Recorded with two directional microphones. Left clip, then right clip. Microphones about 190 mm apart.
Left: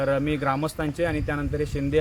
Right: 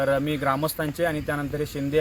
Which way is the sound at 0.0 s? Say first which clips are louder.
Right 1 dB; 10° left (ahead or behind).